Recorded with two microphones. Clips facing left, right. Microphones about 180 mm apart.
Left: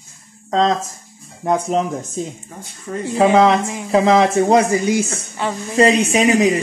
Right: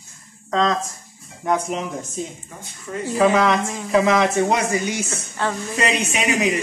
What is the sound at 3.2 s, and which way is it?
Speech, 25° left (ahead or behind).